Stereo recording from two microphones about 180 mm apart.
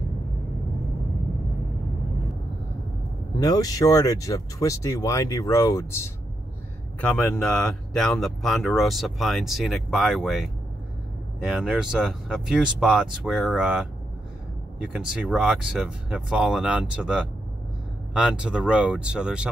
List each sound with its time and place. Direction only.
3.3 s speech: 20° left (ahead or behind)
7.0 s speech: 10° left (ahead or behind)